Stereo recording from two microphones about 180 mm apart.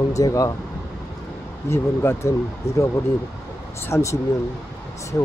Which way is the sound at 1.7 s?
15° left (ahead or behind).